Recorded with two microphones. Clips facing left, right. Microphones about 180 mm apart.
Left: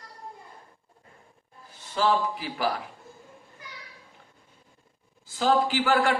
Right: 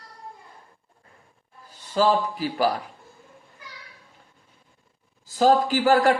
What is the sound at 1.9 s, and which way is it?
Speech, 40° right (ahead or behind).